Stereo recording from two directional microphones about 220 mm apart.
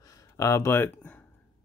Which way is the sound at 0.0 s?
15° left (ahead or behind).